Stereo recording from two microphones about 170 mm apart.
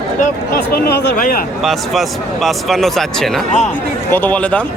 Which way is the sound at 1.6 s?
Centre (ahead or behind).